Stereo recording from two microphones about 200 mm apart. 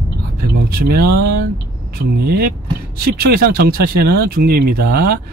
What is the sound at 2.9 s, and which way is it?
Speech, 50° right (ahead or behind).